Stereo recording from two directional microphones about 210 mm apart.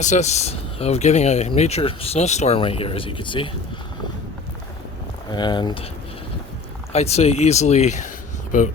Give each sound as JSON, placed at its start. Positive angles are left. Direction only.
{"t": 0.0, "sound": "speech", "side_deg": 35}
{"t": 5.3, "sound": "speech", "side_deg": 20}
{"t": 6.9, "sound": "speech", "side_deg": 30}